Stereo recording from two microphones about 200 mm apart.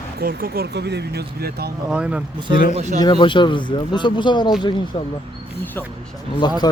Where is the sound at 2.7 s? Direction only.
35° right (ahead or behind).